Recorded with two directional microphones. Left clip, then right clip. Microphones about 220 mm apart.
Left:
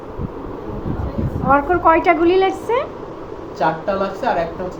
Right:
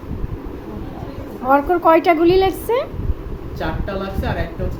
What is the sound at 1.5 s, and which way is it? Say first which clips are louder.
A woman's voice: even; 15° right (ahead or behind).